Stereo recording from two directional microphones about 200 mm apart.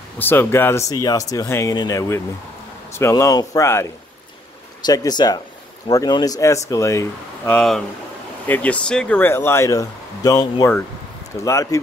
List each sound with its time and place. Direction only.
0.2 s speech: 10° left (ahead or behind)
4.8 s speech: 20° left (ahead or behind)
7.5 s speech: centre (ahead or behind)